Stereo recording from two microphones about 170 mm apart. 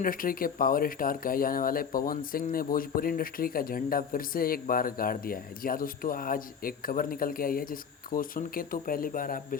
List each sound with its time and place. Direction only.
0.0 s speech: 55° left (ahead or behind)